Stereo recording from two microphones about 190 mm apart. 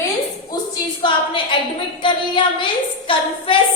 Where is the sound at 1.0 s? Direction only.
25° left (ahead or behind).